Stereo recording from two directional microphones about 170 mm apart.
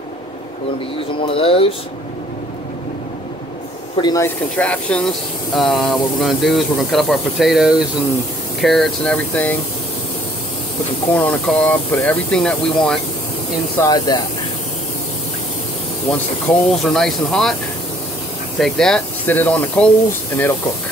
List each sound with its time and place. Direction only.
1.2 s speech: 35° left (ahead or behind)
3.9 s speech: 25° left (ahead or behind)
4.6 s speech: 5° left (ahead or behind)
11.1 s speech: 10° left (ahead or behind)
13.7 s speech: 25° left (ahead or behind)
16.1 s speech: 5° left (ahead or behind)
18.6 s speech: 5° left (ahead or behind)